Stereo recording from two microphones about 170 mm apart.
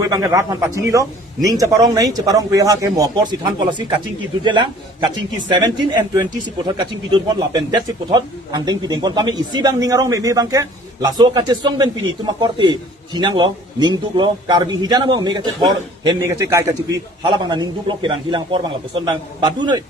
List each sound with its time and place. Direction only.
0.1 s speech: 20° right (ahead or behind)
7.3 s speech: 25° right (ahead or behind)